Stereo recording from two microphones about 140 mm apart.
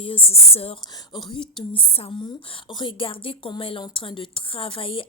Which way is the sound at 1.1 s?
30° left (ahead or behind).